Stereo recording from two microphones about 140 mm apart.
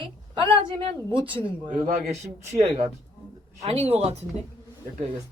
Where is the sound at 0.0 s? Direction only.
35° right (ahead or behind).